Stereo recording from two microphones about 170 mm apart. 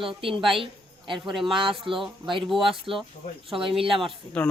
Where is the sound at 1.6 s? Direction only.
30° right (ahead or behind).